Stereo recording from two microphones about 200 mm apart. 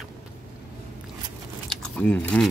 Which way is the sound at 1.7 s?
5° left (ahead or behind).